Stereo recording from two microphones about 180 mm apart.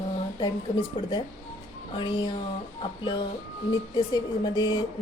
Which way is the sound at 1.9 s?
25° left (ahead or behind).